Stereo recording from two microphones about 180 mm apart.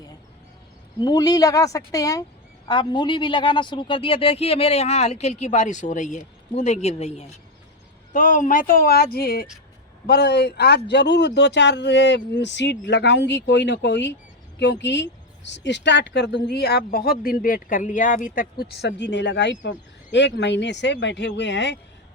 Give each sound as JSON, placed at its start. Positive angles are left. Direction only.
{"t": 0.9, "sound": "speech", "side_deg": 25}
{"t": 8.1, "sound": "speech", "side_deg": 45}
{"t": 18.6, "sound": "speech", "side_deg": 65}